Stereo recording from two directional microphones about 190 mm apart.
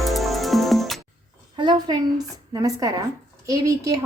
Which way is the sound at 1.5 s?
25° right (ahead or behind).